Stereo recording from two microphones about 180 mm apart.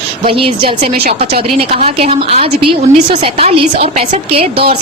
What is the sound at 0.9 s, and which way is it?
Speech, 60° right (ahead or behind).